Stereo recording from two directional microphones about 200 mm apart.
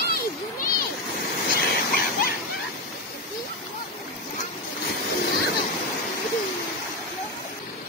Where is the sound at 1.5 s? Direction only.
50° left (ahead or behind).